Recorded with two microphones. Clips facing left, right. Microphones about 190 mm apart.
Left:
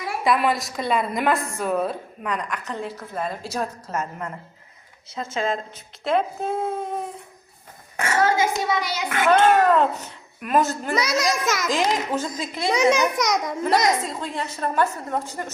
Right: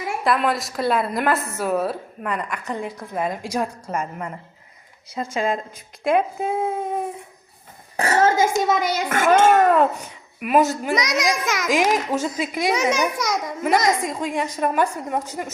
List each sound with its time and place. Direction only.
0.3 s a child's voice: centre (ahead or behind)
7.9 s a child's voice: 35° right (ahead or behind)
9.5 s a child's voice: 10° right (ahead or behind)